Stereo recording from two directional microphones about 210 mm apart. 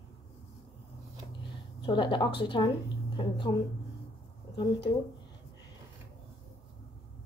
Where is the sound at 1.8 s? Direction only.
25° left (ahead or behind).